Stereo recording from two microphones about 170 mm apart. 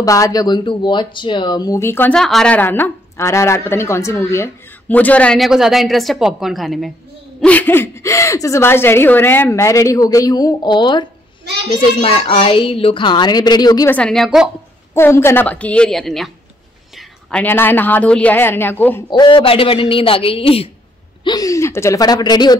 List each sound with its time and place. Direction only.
0.0 s a woman's voice: 20° left (ahead or behind)
13.8 s a woman's voice: 5° left (ahead or behind)
15.0 s speech: 15° left (ahead or behind)
19.0 s speech: 25° left (ahead or behind)
21.2 s a woman's voice: 25° left (ahead or behind)